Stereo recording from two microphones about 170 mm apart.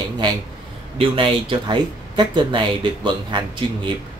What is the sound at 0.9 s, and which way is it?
Speech, 30° right (ahead or behind).